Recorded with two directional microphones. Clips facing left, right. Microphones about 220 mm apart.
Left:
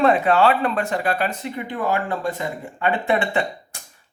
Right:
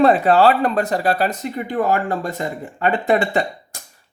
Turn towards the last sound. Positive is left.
turn(degrees=-40)  # may be behind; listen again after turning